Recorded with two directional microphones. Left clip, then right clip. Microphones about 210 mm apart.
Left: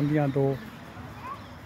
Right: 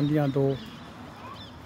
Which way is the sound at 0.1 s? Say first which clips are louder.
Left 1 dB; 5° right (ahead or behind).